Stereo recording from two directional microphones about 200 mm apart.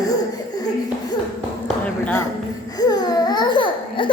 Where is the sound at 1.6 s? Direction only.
5° left (ahead or behind).